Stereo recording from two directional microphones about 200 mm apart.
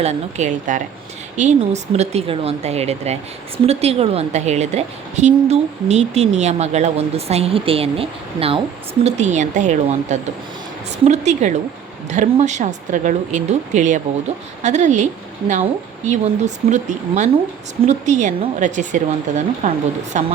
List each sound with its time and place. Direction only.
0.0 s a woman's voice: 35° right (ahead or behind)